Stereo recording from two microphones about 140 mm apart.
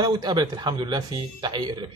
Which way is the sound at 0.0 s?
30° right (ahead or behind).